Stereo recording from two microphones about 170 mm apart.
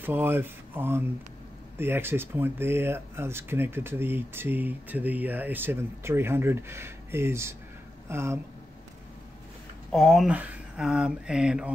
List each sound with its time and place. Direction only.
0.0 s speech: 10° right (ahead or behind)
9.8 s speech: centre (ahead or behind)